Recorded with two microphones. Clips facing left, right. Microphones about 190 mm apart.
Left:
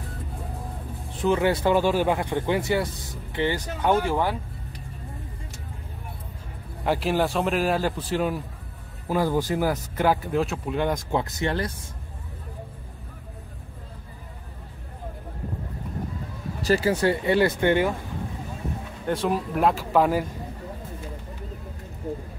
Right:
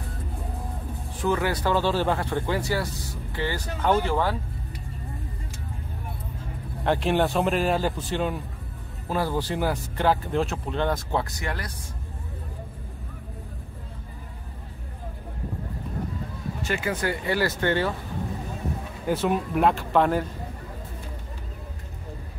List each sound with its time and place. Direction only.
1.2 s speech: 20° left (ahead or behind)
6.8 s speech: 5° left (ahead or behind)
10.8 s speech: 15° left (ahead or behind)
16.6 s speech: 35° left (ahead or behind); by 17.9 s 15° left (ahead or behind)
19.0 s speech: 5° right (ahead or behind)